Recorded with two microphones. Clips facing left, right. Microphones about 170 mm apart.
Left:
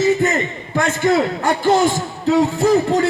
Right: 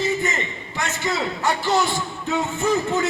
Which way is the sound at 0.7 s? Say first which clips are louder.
Left 9 dB; 55° left (ahead or behind).